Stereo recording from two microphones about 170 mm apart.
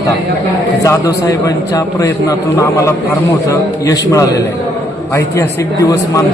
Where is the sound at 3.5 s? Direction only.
20° left (ahead or behind).